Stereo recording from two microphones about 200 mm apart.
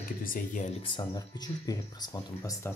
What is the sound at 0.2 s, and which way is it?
Speech, 45° left (ahead or behind).